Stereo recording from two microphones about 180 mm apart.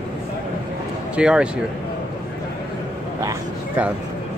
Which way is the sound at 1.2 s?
5° right (ahead or behind).